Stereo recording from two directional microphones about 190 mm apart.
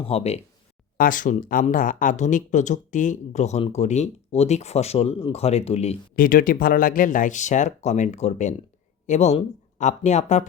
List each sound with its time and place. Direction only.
0.0 s speech: 30° left (ahead or behind)
0.9 s speech: 45° left (ahead or behind)
6.1 s speech: 45° left (ahead or behind)